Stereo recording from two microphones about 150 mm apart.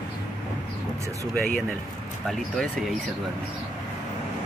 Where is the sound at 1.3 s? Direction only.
10° left (ahead or behind).